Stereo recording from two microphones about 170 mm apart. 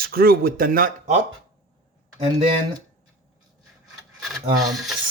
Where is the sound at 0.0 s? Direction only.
60° right (ahead or behind).